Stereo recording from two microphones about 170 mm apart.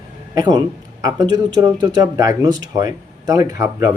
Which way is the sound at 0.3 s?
25° right (ahead or behind).